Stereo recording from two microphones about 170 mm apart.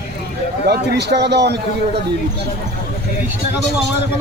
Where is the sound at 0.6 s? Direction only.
75° right (ahead or behind).